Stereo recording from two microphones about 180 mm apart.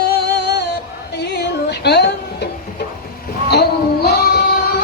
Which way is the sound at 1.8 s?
65° left (ahead or behind).